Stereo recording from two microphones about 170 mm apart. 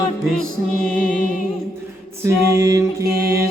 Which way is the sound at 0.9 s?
55° left (ahead or behind).